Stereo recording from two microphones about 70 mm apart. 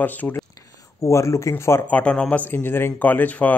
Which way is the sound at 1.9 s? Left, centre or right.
Centre.